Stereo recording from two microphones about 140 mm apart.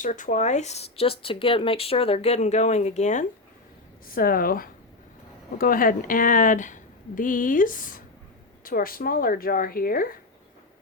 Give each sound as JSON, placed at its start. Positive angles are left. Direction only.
{"t": 0.0, "sound": "speech", "side_deg": 65}
{"t": 4.1, "sound": "speech", "side_deg": 90}
{"t": 8.6, "sound": "speech", "side_deg": 90}